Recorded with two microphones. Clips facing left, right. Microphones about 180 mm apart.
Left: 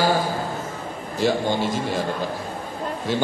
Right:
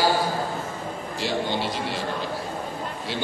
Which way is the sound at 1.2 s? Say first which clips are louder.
Left 6 dB; 45° left (ahead or behind).